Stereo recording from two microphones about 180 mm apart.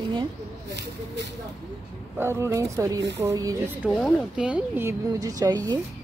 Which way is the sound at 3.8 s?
5° left (ahead or behind).